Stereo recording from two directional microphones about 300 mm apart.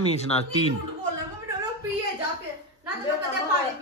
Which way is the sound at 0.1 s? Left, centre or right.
Left.